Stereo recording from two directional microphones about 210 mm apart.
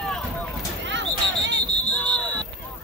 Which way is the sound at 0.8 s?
60° right (ahead or behind).